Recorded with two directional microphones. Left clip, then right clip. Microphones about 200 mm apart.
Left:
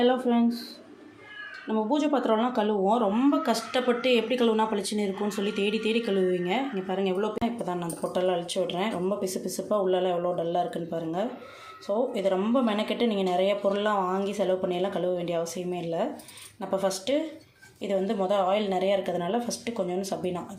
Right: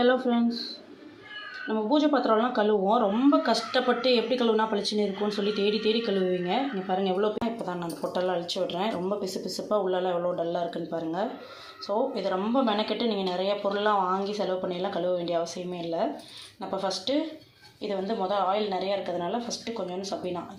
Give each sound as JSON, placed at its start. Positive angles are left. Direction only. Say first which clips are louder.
{"t": 0.0, "sound": "speech", "louder": "even", "side_deg": 20}
{"t": 1.6, "sound": "speech", "louder": "right 2 dB", "side_deg": 30}
{"t": 16.6, "sound": "a woman's voice", "louder": "left 2 dB", "side_deg": 35}